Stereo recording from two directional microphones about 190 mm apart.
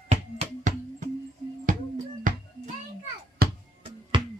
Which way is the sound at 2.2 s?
45° right (ahead or behind).